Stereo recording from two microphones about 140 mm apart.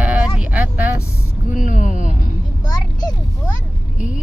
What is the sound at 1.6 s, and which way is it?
Speech, 65° left (ahead or behind).